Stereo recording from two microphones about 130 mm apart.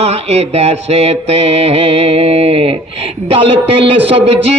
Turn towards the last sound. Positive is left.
turn(degrees=-50)  # may be behind; listen again after turning